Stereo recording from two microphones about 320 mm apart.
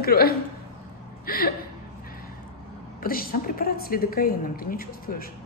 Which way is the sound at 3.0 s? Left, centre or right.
Left.